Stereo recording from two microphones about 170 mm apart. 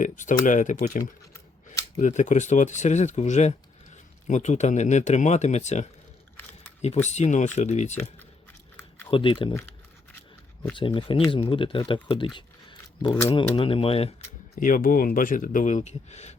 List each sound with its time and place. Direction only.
0.0 s speech: 50° left (ahead or behind)
6.8 s speech: 40° left (ahead or behind)
9.0 s speech: 30° left (ahead or behind)
10.8 s speech: 30° left (ahead or behind)
13.1 s speech: 15° left (ahead or behind)
13.3 s speech: 30° left (ahead or behind)
14.5 s speech: 50° left (ahead or behind)